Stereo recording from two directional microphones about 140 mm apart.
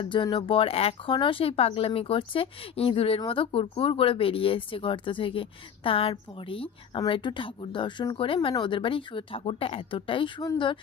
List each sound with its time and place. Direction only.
0.0 s speech: 35° left (ahead or behind)